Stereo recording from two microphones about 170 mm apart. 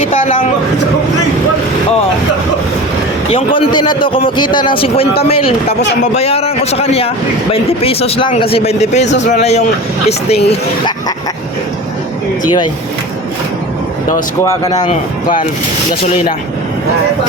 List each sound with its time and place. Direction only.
3.2 s a man's voice: 30° left (ahead or behind)
14.4 s a man's voice: 20° left (ahead or behind)